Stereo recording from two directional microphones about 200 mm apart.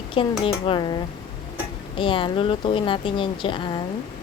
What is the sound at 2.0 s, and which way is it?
Speech, 25° left (ahead or behind).